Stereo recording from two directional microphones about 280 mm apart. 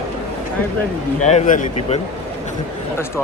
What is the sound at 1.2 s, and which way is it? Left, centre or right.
Speech, left.